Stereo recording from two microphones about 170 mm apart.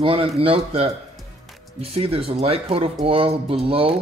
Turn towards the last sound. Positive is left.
turn(degrees=-35)  # may be behind; listen again after turning